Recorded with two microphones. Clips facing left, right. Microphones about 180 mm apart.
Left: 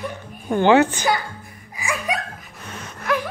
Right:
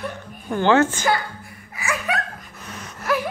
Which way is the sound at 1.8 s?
15° left (ahead or behind).